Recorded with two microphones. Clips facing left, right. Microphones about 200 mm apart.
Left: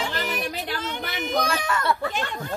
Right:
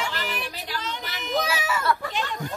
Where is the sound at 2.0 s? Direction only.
50° left (ahead or behind).